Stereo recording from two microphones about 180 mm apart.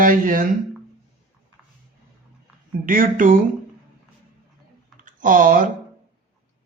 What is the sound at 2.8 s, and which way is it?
Speech, 50° right (ahead or behind).